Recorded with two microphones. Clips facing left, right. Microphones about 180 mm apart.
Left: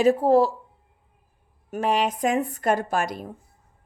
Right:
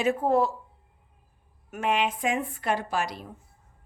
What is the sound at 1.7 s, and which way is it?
A woman's voice, 35° left (ahead or behind).